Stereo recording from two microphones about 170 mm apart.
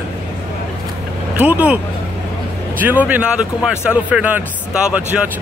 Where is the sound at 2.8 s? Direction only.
10° right (ahead or behind).